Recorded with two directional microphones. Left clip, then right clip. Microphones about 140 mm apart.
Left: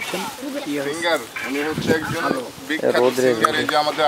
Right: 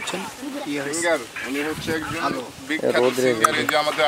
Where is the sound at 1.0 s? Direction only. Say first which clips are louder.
Right 1 dB; 10° left (ahead or behind).